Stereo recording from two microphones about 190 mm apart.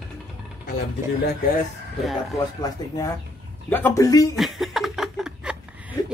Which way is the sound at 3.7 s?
15° left (ahead or behind).